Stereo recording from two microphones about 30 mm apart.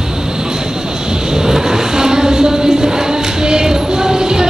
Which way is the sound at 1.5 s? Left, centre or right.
Centre.